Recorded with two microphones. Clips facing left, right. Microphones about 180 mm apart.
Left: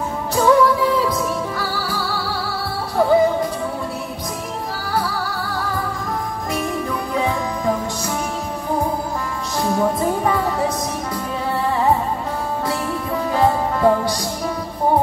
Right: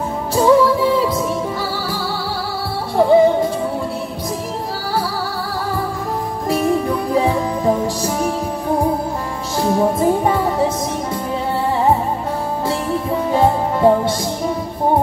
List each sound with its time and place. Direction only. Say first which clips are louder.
0.4 s music: right 2 dB; 25° right (ahead or behind)
3.0 s music: right 3 dB; 25° right (ahead or behind)
7.2 s music: right 3 dB; 30° right (ahead or behind)
9.6 s music: right 3 dB; 25° right (ahead or behind)
13.3 s music: right 2 dB; 25° right (ahead or behind)